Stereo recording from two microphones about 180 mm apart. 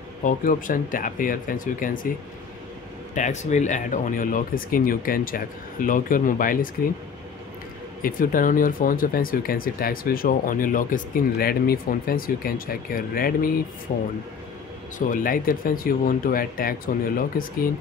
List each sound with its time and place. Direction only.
0.2 s speech: 50° left (ahead or behind)
3.2 s speech: 40° left (ahead or behind)
8.0 s speech: 50° left (ahead or behind)